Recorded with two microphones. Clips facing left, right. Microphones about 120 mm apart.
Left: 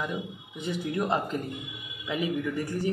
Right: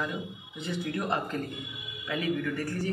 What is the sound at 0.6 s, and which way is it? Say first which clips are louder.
Speech: left 3 dB; 20° left (ahead or behind).